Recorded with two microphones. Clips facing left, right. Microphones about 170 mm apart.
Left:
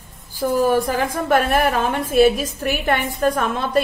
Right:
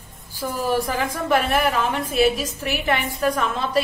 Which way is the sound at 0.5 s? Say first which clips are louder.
Left 5 dB; 50° left (ahead or behind).